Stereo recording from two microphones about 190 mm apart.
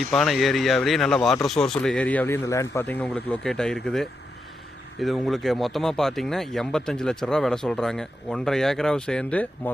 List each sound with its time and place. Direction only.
0.1 s speech: centre (ahead or behind)